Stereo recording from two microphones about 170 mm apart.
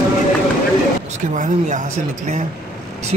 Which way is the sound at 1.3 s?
45° right (ahead or behind).